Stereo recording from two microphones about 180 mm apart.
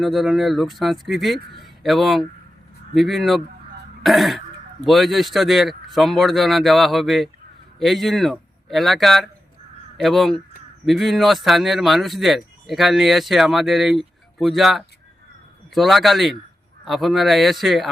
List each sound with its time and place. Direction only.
0.0 s speech: centre (ahead or behind)